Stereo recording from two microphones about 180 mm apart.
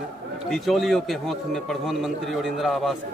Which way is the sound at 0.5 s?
Centre (ahead or behind).